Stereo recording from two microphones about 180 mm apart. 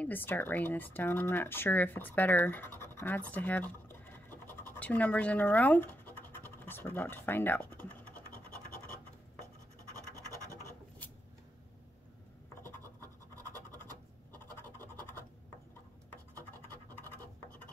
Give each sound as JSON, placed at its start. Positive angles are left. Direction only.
{"t": 0.0, "sound": "speech", "side_deg": 10}
{"t": 10.3, "sound": "scratch", "side_deg": -20}
{"t": 14.3, "sound": "scratch", "side_deg": 10}